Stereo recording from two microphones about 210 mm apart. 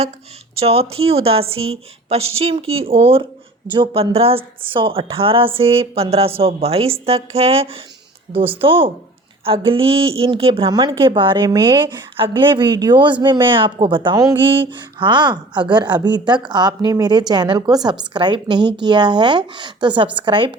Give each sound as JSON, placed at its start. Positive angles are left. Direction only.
{"t": 0.6, "sound": "a woman's voice", "side_deg": -30}